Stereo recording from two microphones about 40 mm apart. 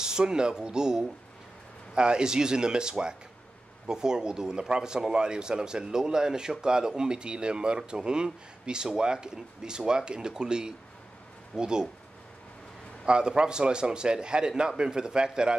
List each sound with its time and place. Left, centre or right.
0.0 s speech: centre
13.0 s speech: right